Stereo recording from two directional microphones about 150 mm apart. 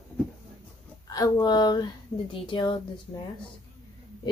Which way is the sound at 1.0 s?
25° left (ahead or behind).